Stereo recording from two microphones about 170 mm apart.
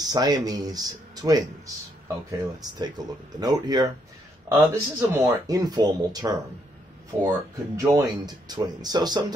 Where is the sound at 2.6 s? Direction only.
25° right (ahead or behind).